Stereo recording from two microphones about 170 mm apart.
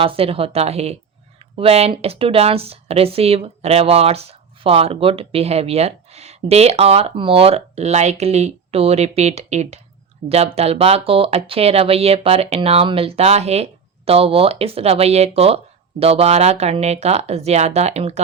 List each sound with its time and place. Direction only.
0.0 s speech: 35° right (ahead or behind)